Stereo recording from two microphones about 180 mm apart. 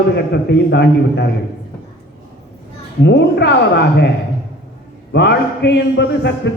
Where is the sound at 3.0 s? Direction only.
70° left (ahead or behind).